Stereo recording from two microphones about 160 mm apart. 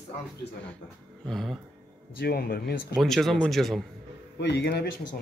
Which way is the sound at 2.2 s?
75° left (ahead or behind).